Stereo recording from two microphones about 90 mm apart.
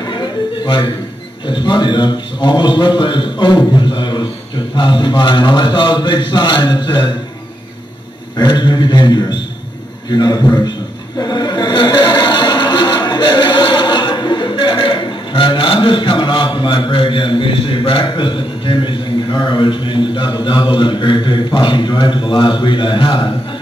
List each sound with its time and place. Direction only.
0.0 s music: 55° left (ahead or behind)
1.4 s a man's voice: 60° left (ahead or behind)
8.4 s a man's voice: 55° left (ahead or behind)
11.1 s a sound: 50° left (ahead or behind); by 18.9 s 65° left (ahead or behind)
19.3 s a man's voice: 55° left (ahead or behind); by 23.3 s 75° left (ahead or behind)